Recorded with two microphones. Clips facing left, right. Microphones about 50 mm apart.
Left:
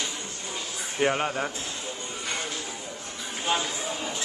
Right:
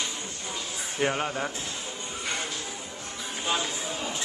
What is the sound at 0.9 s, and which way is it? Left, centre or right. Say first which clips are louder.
Speech: left 2 dB; centre.